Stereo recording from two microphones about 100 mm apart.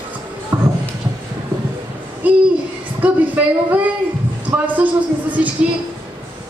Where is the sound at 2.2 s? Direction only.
15° right (ahead or behind).